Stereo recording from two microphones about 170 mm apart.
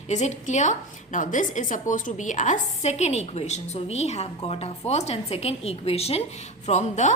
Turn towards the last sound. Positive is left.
turn(degrees=45)  # may be behind; listen again after turning